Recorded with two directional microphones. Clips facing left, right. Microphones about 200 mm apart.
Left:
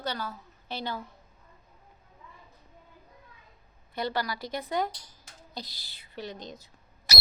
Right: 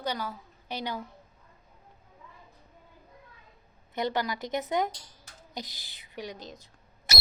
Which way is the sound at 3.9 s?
20° right (ahead or behind).